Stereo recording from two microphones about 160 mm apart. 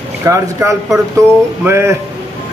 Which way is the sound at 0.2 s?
20° right (ahead or behind).